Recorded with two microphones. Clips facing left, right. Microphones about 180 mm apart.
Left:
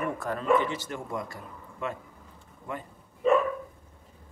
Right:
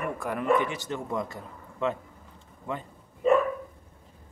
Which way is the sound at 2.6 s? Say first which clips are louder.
Right 3 dB; 25° right (ahead or behind).